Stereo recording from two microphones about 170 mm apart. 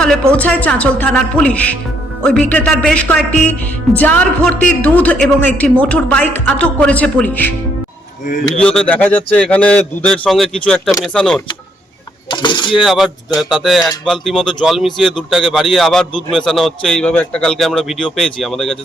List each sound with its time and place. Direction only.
0.3 s a man's voice: 10° left (ahead or behind)
8.5 s a man's voice: 5° left (ahead or behind)
12.3 s speech: 25° left (ahead or behind)
12.7 s a man's voice: centre (ahead or behind)